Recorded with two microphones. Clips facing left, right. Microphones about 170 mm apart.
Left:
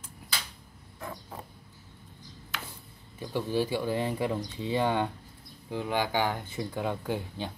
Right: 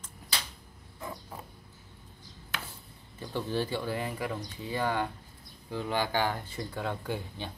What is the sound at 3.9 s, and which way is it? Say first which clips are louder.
Speech: left 5 dB; 25° left (ahead or behind).